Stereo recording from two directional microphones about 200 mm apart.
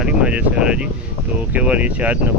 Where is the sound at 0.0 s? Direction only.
5° right (ahead or behind).